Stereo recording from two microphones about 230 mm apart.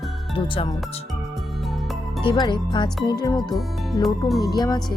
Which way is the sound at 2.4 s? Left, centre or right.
Centre.